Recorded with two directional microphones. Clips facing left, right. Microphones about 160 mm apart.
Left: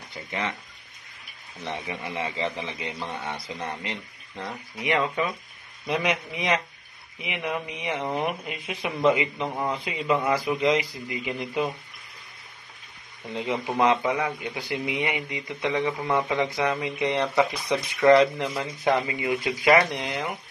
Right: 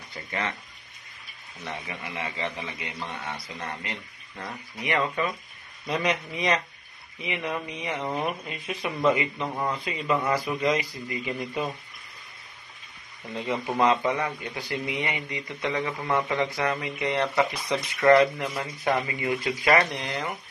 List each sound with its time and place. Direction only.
1.6 s speech: 30° left (ahead or behind)
13.3 s speech: 15° left (ahead or behind)